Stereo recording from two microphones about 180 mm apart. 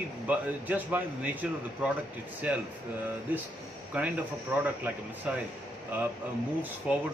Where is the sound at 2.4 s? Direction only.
10° right (ahead or behind).